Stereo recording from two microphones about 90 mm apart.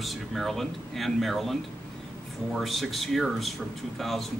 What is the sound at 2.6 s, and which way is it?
Speech, centre (ahead or behind).